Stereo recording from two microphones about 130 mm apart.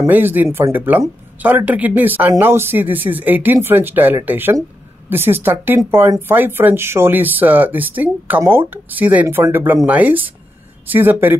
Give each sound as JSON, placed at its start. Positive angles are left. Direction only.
{"t": 0.1, "sound": "speech", "side_deg": -15}